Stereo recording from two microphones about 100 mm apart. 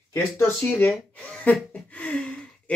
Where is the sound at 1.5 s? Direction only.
15° left (ahead or behind).